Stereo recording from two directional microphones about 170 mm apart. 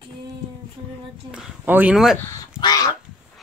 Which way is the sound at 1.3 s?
10° right (ahead or behind).